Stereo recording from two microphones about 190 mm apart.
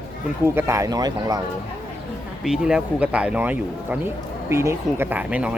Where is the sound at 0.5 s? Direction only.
15° right (ahead or behind).